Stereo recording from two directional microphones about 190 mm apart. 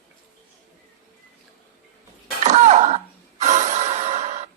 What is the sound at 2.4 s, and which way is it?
Music, 40° right (ahead or behind).